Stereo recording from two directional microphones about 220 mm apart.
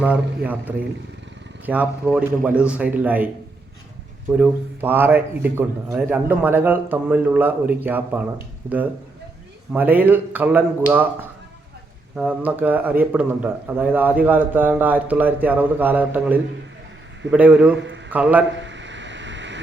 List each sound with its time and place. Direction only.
0.0 s speech: 5° right (ahead or behind)
4.3 s speech: 5° right (ahead or behind)
9.7 s a man's voice: 10° right (ahead or behind)
17.7 s a man's voice: 55° right (ahead or behind)
18.1 s speech: 5° right (ahead or behind)
18.6 s a sound: 55° right (ahead or behind)